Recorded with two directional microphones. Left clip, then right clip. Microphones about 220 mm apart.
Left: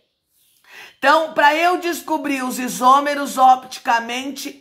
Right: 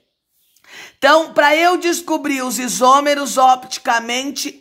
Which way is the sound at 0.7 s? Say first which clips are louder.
Right 3 dB; 35° right (ahead or behind).